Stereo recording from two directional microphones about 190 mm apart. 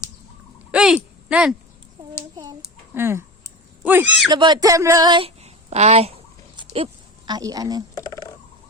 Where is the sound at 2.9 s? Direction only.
15° right (ahead or behind).